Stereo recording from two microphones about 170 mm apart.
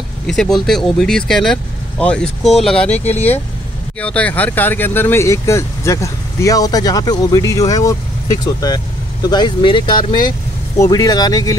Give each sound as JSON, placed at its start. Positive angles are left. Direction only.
{"t": 0.3, "sound": "speech", "side_deg": 5}
{"t": 3.0, "sound": "speech", "side_deg": 40}
{"t": 4.0, "sound": "speech", "side_deg": 10}